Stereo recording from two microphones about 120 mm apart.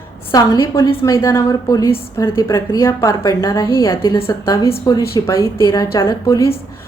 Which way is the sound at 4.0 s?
45° left (ahead or behind).